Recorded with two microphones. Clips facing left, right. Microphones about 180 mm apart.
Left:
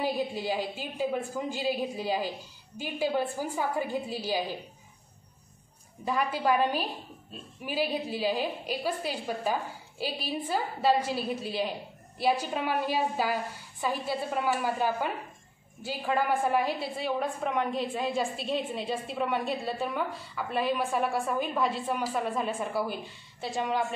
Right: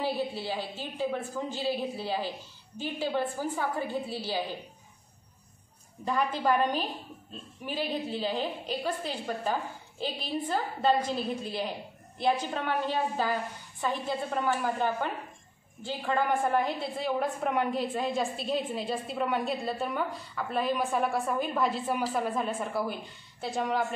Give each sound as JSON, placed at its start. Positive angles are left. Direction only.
{"t": 0.0, "sound": "a woman's voice", "side_deg": 15}
{"t": 6.0, "sound": "a woman's voice", "side_deg": 5}